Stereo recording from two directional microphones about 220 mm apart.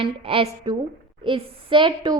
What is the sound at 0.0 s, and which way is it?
A woman's voice, 25° right (ahead or behind).